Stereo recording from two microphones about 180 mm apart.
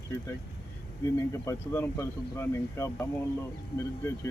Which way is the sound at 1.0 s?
15° left (ahead or behind).